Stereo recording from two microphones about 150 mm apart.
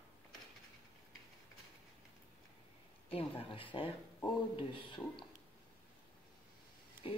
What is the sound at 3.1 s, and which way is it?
Speech, 40° left (ahead or behind).